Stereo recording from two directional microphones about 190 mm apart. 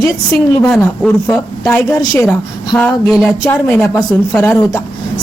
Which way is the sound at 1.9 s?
20° left (ahead or behind).